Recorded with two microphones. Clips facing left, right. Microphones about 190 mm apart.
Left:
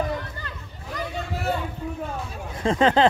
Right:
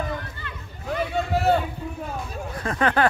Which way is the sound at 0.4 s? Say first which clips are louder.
Even; 40° left (ahead or behind).